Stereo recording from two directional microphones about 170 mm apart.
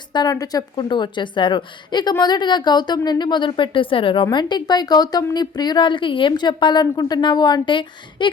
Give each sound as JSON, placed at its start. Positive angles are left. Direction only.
{"t": 0.1, "sound": "a woman's voice", "side_deg": 25}